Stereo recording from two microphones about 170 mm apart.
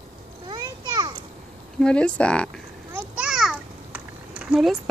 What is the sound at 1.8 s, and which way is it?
Speech, 5° left (ahead or behind).